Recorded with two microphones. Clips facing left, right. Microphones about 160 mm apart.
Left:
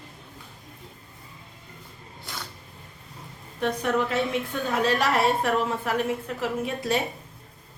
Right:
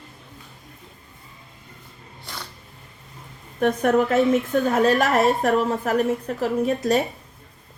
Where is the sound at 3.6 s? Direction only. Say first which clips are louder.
Right 6 dB; 50° right (ahead or behind).